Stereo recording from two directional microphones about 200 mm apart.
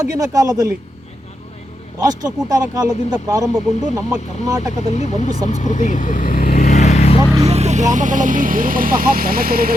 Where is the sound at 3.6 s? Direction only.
35° left (ahead or behind).